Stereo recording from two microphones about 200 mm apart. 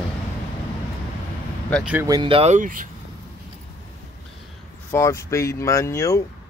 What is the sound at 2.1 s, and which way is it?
Speech, 25° right (ahead or behind).